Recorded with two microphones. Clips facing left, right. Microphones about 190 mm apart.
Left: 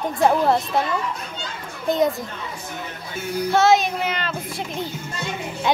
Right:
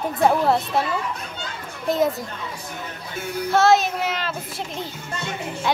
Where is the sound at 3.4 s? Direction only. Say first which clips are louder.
Even; centre (ahead or behind).